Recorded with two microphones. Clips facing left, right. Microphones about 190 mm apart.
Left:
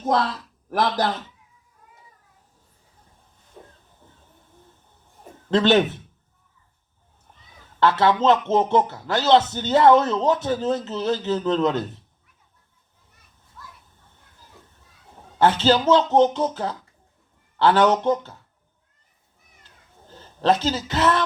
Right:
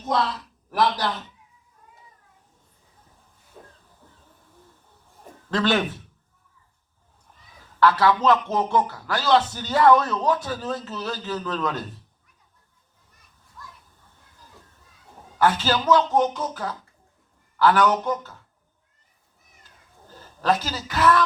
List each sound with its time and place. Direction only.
0.7 s speech: 45° left (ahead or behind)
4.0 s train: 25° left (ahead or behind)
5.5 s a man's voice: 20° left (ahead or behind)
7.8 s a man's voice: 25° left (ahead or behind)
15.4 s a man's voice: 25° left (ahead or behind)
20.1 s a man's voice: 25° left (ahead or behind)